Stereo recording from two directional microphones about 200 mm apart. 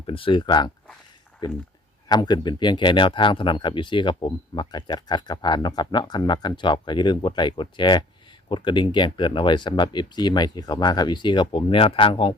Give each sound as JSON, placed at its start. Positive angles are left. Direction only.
{"t": 0.1, "sound": "speech", "side_deg": 25}
{"t": 2.0, "sound": "speech", "side_deg": 20}